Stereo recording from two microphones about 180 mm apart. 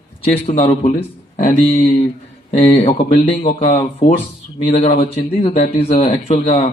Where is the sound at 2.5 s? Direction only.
35° left (ahead or behind).